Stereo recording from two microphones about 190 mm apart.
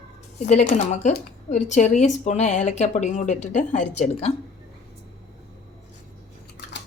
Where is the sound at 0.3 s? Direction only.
40° left (ahead or behind).